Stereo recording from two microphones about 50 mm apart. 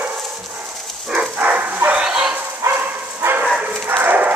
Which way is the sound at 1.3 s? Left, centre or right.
Right.